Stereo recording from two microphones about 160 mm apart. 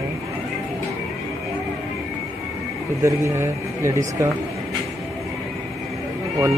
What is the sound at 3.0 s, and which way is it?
Speech, 15° right (ahead or behind).